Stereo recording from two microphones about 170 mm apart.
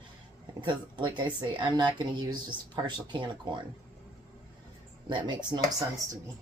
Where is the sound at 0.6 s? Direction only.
25° right (ahead or behind).